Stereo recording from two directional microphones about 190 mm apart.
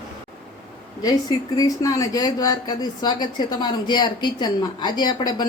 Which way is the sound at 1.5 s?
20° left (ahead or behind).